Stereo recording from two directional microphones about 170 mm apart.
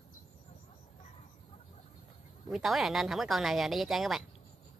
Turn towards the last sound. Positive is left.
turn(degrees=0)  # may be behind; listen again after turning